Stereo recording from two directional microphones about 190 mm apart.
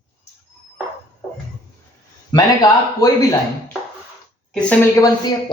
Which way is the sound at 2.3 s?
20° left (ahead or behind).